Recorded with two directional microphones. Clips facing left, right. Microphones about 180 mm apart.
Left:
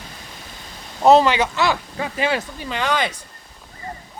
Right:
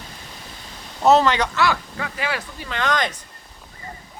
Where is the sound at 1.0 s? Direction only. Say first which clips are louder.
Left 2 dB; 10° left (ahead or behind).